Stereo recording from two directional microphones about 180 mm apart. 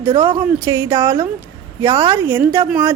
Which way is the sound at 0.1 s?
30° right (ahead or behind).